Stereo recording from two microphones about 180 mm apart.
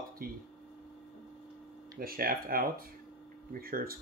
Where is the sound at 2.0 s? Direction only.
55° right (ahead or behind).